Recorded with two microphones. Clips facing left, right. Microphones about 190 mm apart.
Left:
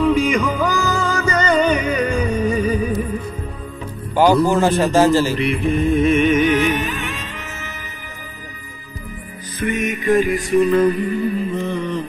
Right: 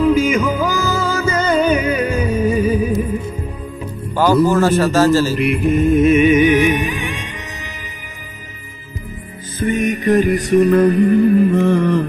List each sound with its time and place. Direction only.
0.0 s music: centre (ahead or behind)
4.1 s music: 15° left (ahead or behind)
4.5 s a man's voice: 15° left (ahead or behind)
5.4 s music: centre (ahead or behind)
9.6 s music: 30° right (ahead or behind)
11.1 s music: 55° right (ahead or behind)